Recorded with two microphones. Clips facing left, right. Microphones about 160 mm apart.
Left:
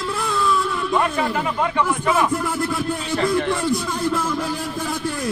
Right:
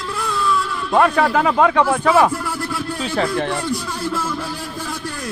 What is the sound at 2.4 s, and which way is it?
Speech, 20° left (ahead or behind).